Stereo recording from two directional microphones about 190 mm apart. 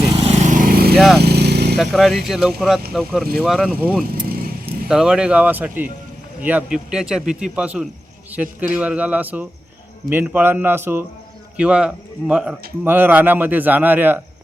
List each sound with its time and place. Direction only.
0.2 s vehicle: 35° right (ahead or behind)
0.9 s speech: centre (ahead or behind)
1.2 s vehicle: 60° right (ahead or behind)
1.7 s a man's voice: centre (ahead or behind)